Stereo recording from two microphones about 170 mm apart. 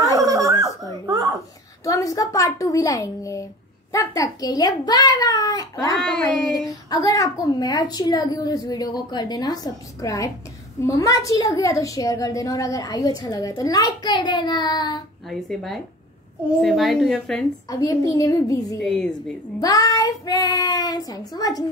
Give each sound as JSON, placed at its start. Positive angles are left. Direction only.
{"t": 0.1, "sound": "a sound", "side_deg": -20}
{"t": 1.0, "sound": "babbling", "side_deg": -20}
{"t": 1.9, "sound": "a woman's voice", "side_deg": 20}
{"t": 5.9, "sound": "a woman's voice", "side_deg": 0}
{"t": 6.9, "sound": "a woman's voice", "side_deg": 20}
{"t": 15.2, "sound": "a woman's voice", "side_deg": 0}
{"t": 17.6, "sound": "a woman's voice", "side_deg": 20}
{"t": 18.8, "sound": "a woman's voice", "side_deg": 5}
{"t": 19.6, "sound": "a woman's voice", "side_deg": 20}